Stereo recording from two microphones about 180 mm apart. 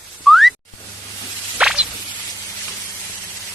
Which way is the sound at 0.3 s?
Centre (ahead or behind).